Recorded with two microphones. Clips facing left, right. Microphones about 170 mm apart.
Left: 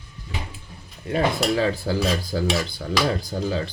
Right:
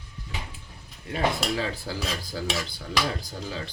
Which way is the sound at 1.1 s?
50° left (ahead or behind).